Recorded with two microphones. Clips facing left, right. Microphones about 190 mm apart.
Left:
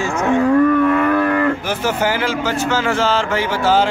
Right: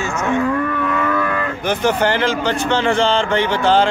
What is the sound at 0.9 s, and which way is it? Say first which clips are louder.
Livestock: left 4 dB; 55° left (ahead or behind).